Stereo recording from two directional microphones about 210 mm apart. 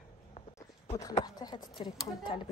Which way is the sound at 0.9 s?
15° left (ahead or behind).